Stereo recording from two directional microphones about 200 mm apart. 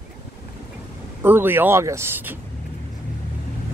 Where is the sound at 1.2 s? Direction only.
10° right (ahead or behind).